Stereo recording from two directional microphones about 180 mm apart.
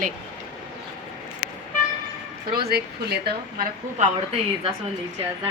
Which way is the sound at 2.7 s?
65° right (ahead or behind).